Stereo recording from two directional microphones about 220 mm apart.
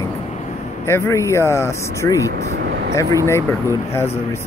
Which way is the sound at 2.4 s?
60° right (ahead or behind).